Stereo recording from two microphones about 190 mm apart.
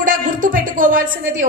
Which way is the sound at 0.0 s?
45° right (ahead or behind).